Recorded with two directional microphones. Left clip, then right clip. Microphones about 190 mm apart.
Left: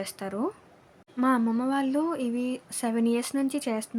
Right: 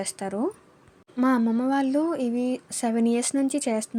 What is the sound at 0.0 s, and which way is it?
Speech, 10° right (ahead or behind).